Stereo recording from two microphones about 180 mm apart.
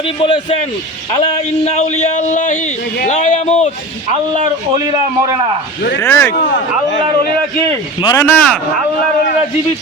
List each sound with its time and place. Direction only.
0.2 s a man's voice: 30° left (ahead or behind)
1.6 s a man's voice: 40° left (ahead or behind)
6.0 s speech: 15° left (ahead or behind)
8.0 s speech: 15° left (ahead or behind)